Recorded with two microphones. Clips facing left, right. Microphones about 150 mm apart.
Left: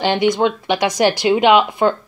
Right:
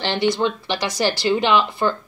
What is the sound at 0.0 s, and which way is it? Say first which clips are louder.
Speech: left 4 dB; 15° left (ahead or behind).